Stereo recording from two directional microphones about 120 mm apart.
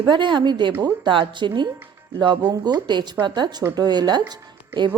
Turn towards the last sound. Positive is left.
turn(degrees=-40)  # may be behind; listen again after turning